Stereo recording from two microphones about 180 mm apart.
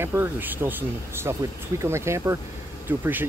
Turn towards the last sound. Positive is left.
turn(degrees=-10)  # may be behind; listen again after turning